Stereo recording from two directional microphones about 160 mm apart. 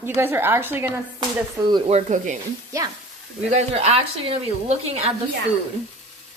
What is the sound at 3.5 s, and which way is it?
A woman's voice, 40° right (ahead or behind).